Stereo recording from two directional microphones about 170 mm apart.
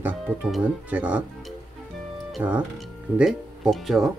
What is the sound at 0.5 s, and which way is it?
Speech, 10° right (ahead or behind).